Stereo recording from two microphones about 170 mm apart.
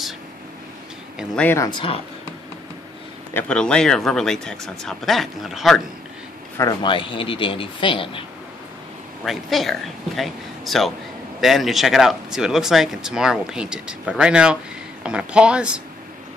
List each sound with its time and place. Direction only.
1.3 s speech: 10° left (ahead or behind)
1.7 s speech: 30° left (ahead or behind)
3.3 s speech: 5° left (ahead or behind)
6.6 s speech: 30° left (ahead or behind)
9.2 s speech: centre (ahead or behind)